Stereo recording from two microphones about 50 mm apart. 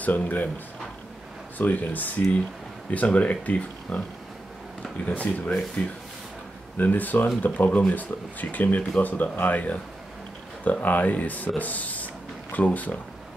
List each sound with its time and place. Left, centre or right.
0.0 s speech: left
1.6 s speech: left
5.1 s speech: left